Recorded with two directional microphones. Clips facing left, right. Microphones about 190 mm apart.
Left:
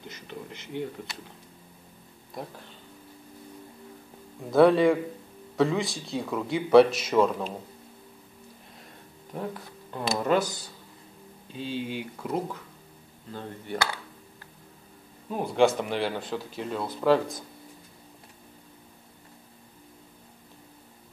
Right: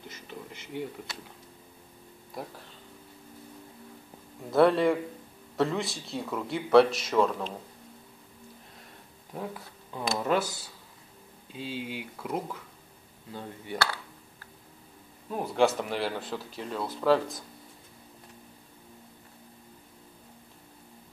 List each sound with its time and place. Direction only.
0.1 s a sound: 5° right (ahead or behind)
4.5 s speech: centre (ahead or behind)
9.3 s speech: centre (ahead or behind)
15.3 s speech: centre (ahead or behind)